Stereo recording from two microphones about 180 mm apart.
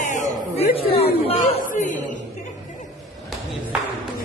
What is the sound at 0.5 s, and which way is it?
Speech, 35° left (ahead or behind).